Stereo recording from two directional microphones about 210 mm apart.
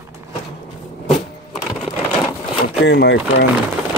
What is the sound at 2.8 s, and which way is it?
Speech, 55° left (ahead or behind).